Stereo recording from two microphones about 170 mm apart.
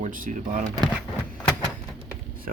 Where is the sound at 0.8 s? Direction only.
5° right (ahead or behind).